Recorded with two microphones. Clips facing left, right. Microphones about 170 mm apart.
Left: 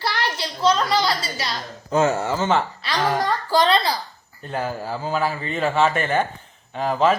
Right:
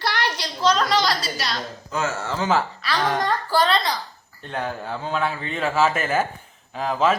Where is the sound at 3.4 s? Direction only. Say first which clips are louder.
Left 4 dB; 20° left (ahead or behind).